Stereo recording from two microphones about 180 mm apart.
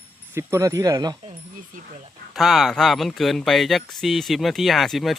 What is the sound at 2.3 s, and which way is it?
Speech, centre (ahead or behind).